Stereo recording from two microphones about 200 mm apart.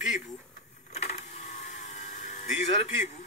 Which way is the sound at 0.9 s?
35° left (ahead or behind).